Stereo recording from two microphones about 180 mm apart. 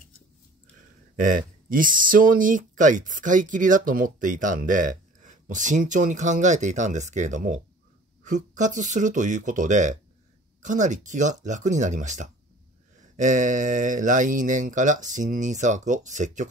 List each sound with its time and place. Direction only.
1.1 s speech: 50° right (ahead or behind)